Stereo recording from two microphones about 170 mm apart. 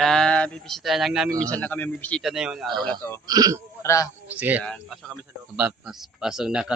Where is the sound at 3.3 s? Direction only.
20° right (ahead or behind).